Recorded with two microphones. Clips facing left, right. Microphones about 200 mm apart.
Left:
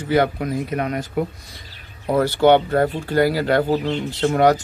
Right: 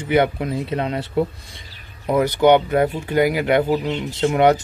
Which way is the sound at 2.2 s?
15° right (ahead or behind).